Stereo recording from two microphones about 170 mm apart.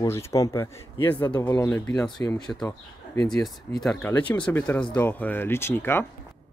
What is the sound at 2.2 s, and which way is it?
Speech, 20° left (ahead or behind).